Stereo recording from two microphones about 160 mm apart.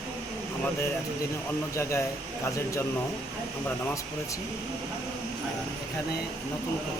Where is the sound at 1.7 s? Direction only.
20° left (ahead or behind).